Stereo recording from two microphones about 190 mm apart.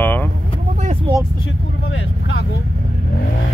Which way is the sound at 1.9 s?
75° left (ahead or behind).